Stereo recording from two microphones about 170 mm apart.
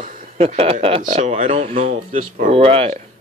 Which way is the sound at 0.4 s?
35° right (ahead or behind).